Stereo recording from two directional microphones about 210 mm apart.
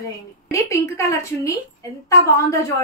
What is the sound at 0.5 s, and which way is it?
A woman's voice, 15° left (ahead or behind).